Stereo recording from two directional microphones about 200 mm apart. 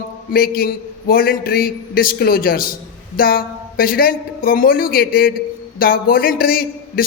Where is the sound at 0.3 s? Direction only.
50° left (ahead or behind).